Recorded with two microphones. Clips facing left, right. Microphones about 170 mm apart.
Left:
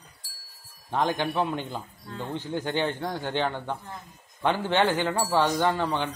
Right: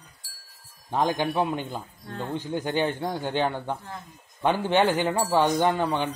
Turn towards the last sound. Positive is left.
turn(degrees=-15)  # may be behind; listen again after turning